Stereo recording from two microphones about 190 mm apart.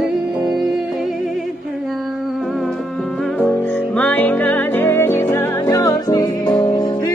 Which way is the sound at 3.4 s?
5° left (ahead or behind).